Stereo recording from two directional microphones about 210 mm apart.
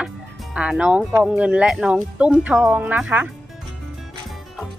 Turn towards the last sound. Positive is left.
turn(degrees=-10)  # may be behind; listen again after turning